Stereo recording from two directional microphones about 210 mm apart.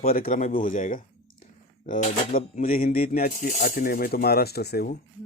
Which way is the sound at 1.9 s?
40° left (ahead or behind).